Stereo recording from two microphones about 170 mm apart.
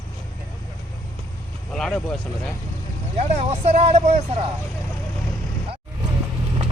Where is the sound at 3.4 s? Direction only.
40° right (ahead or behind).